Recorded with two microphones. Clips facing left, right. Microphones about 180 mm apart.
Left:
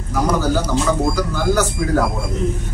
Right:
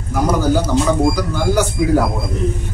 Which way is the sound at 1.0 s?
10° right (ahead or behind).